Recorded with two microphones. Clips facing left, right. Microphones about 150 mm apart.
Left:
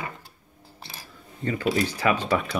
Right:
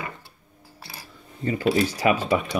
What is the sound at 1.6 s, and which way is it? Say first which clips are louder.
Speech: right 4 dB; 30° right (ahead or behind).